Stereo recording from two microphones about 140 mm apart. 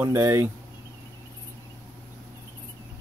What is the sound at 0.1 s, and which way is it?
Speech, 20° right (ahead or behind).